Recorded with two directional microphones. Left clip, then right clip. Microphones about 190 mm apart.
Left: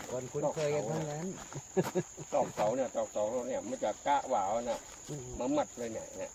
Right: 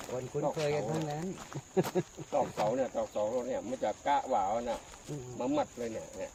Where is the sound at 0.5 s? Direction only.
25° right (ahead or behind).